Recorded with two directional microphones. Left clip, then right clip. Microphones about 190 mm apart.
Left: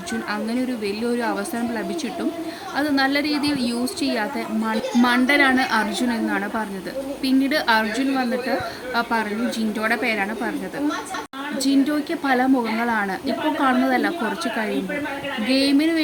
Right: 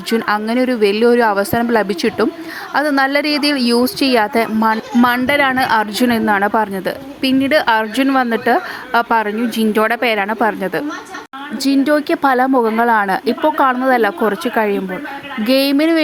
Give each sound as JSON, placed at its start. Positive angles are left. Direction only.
{"t": 0.1, "sound": "a woman's voice", "side_deg": -50}
{"t": 11.6, "sound": "a woman's voice", "side_deg": -35}